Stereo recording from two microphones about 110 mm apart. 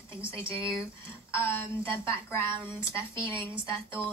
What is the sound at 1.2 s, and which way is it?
A woman's voice, 20° left (ahead or behind).